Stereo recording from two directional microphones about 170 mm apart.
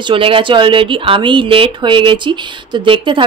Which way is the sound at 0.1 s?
30° right (ahead or behind).